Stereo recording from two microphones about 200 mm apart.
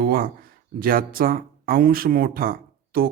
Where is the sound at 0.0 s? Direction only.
45° right (ahead or behind).